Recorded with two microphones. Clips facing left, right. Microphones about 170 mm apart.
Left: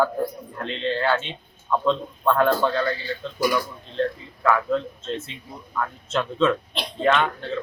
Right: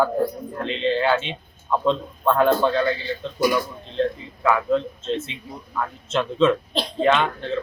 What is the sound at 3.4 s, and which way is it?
Speech, 20° right (ahead or behind).